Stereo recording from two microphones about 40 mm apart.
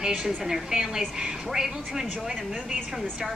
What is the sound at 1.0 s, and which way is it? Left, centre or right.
Speech, right.